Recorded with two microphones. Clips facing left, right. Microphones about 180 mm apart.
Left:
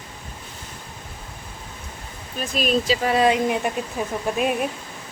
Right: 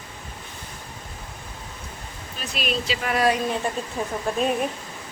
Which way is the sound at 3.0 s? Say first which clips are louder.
Even; 25° left (ahead or behind).